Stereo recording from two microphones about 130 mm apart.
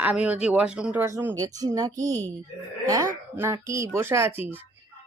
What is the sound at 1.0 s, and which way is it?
Speech, 20° right (ahead or behind).